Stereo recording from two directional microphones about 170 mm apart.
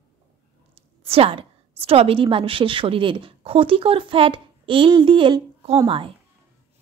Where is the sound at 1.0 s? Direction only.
35° right (ahead or behind).